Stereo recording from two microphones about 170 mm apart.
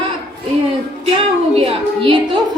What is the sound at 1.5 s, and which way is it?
Speech, 35° right (ahead or behind).